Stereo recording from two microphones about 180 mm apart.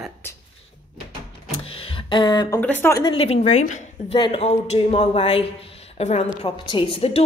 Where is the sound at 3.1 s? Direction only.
35° left (ahead or behind).